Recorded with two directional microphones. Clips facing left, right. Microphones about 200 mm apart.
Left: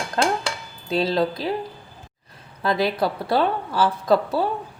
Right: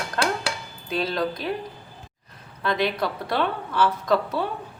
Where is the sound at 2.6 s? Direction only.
35° left (ahead or behind).